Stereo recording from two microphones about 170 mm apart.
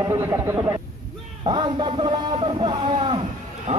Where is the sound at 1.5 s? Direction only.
25° right (ahead or behind).